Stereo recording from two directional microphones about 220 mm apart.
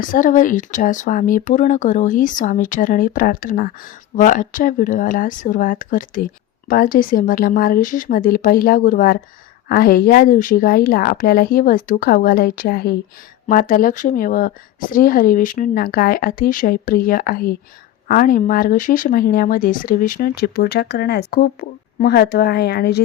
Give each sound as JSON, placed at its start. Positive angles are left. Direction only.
{"t": 0.0, "sound": "speech", "side_deg": 35}